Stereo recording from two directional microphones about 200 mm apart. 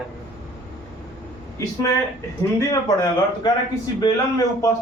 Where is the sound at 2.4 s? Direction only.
15° left (ahead or behind).